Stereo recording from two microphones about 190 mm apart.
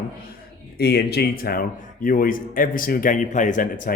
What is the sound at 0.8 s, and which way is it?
A man's voice, 60° left (ahead or behind).